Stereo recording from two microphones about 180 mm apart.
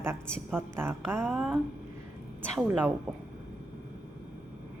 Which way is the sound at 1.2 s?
Centre (ahead or behind).